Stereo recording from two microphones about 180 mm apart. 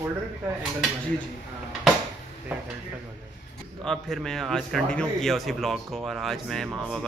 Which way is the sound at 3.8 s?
Centre (ahead or behind).